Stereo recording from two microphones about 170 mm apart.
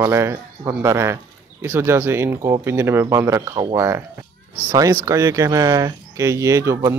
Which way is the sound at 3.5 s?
25° right (ahead or behind).